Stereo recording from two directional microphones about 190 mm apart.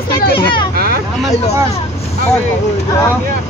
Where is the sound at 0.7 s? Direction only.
55° right (ahead or behind).